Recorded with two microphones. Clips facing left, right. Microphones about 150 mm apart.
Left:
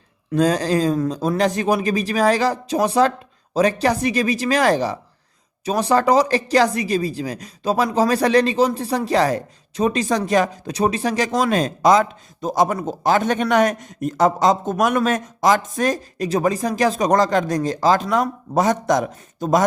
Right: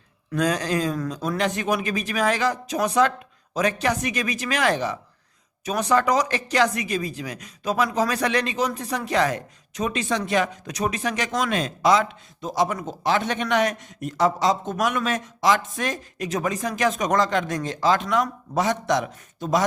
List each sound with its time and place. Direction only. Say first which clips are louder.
0.3 s a woman's voice: left 5 dB; 30° left (ahead or behind)